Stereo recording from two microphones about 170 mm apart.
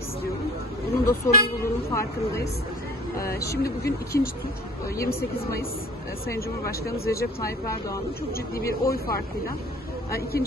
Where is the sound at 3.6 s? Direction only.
65° left (ahead or behind).